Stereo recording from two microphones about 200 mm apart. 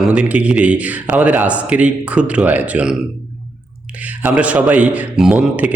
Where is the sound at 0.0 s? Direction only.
5° right (ahead or behind).